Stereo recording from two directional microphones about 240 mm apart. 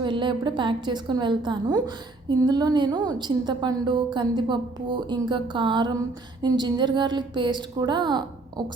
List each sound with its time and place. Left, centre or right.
0.0 s a woman's voice: centre